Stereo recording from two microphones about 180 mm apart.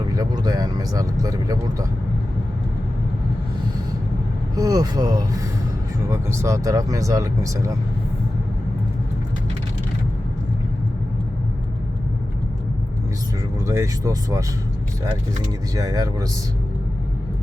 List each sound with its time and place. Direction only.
0.1 s speech: 20° right (ahead or behind)
4.5 s speech: 20° right (ahead or behind)
13.7 s speech: 15° right (ahead or behind)
15.7 s speech: 20° right (ahead or behind)